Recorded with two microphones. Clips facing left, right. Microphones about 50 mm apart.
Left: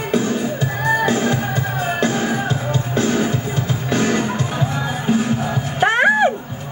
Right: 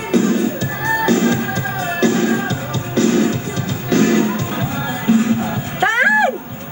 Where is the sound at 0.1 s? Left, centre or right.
Left.